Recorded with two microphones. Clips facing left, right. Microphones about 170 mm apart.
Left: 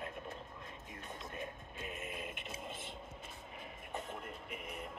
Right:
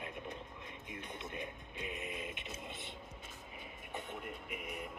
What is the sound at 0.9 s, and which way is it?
Music, 45° left (ahead or behind).